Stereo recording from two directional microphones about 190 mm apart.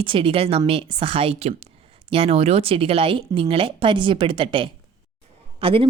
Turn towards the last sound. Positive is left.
turn(degrees=-30)  # may be behind; listen again after turning